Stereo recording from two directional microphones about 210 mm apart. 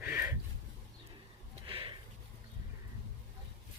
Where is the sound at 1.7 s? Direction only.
25° right (ahead or behind).